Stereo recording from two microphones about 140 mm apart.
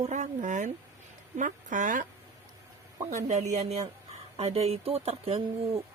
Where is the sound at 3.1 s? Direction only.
60° right (ahead or behind).